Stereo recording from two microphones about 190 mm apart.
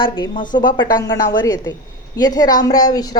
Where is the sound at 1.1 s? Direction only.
20° left (ahead or behind).